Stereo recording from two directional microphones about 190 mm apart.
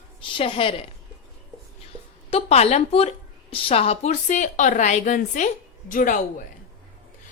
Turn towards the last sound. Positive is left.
turn(degrees=45)  # may be behind; listen again after turning